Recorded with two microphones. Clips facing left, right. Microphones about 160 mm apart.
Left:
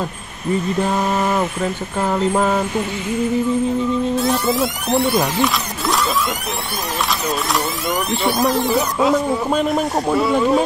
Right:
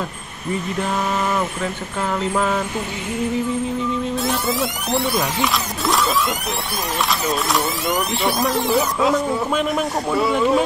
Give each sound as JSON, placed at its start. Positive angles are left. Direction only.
{"t": 2.0, "sound": "a sound", "side_deg": 35}
{"t": 4.2, "sound": "speech", "side_deg": 0}
{"t": 7.1, "sound": "speech", "side_deg": 0}